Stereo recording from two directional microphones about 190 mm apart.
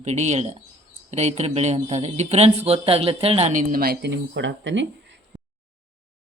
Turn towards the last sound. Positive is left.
turn(degrees=-70)  # may be behind; listen again after turning